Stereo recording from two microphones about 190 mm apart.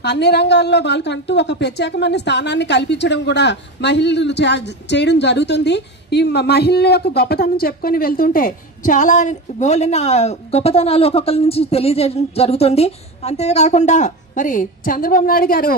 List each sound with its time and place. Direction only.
0.0 s a woman's voice: 60° left (ahead or behind)